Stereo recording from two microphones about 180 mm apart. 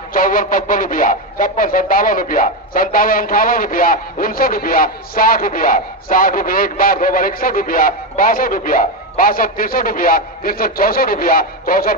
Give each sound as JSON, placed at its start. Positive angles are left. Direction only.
{"t": 0.1, "sound": "speech", "side_deg": 50}